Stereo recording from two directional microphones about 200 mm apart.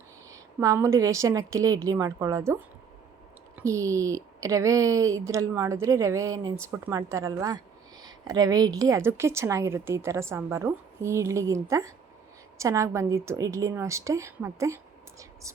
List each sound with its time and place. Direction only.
0.3 s speech: 15° right (ahead or behind)